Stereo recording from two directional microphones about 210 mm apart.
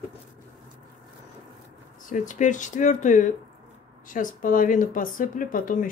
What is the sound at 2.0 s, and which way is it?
Speech, 40° left (ahead or behind).